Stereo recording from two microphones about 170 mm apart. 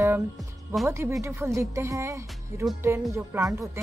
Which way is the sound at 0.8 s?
15° right (ahead or behind).